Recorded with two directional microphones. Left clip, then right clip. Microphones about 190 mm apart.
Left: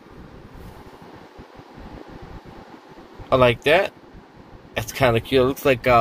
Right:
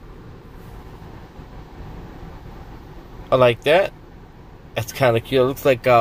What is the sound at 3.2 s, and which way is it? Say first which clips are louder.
Speech: right 1 dB; centre (ahead or behind).